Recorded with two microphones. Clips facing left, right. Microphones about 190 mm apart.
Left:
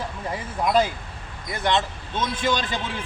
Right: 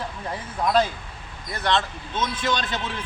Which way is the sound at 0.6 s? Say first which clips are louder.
Even; 10° left (ahead or behind).